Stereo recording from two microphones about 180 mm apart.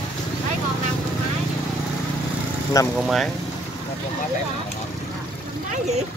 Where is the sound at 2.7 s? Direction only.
20° left (ahead or behind).